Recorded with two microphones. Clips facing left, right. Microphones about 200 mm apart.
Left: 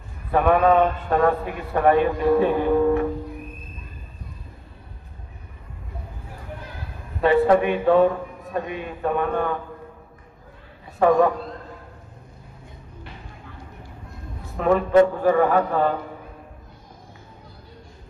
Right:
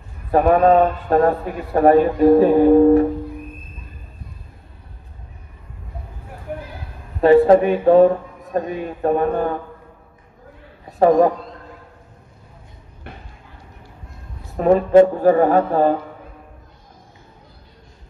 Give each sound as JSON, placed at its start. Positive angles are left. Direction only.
{"t": 0.3, "sound": "a man's voice", "side_deg": -35}
{"t": 7.2, "sound": "a man's voice", "side_deg": -35}
{"t": 11.0, "sound": "a man's voice", "side_deg": -40}
{"t": 14.6, "sound": "a man's voice", "side_deg": -35}